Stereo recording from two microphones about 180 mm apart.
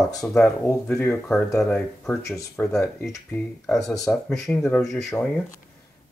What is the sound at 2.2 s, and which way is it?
Speech, 15° left (ahead or behind).